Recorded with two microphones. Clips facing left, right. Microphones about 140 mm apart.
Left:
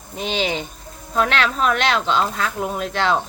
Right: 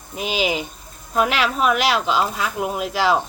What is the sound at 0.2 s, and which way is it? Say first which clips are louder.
Speech: right 1 dB; 5° right (ahead or behind).